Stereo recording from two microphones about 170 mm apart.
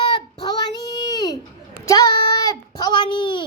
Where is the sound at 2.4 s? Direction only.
20° left (ahead or behind).